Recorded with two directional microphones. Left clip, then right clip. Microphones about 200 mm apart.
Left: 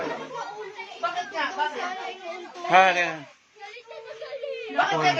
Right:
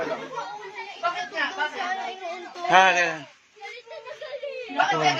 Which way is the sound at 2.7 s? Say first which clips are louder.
Right 1 dB; 10° left (ahead or behind).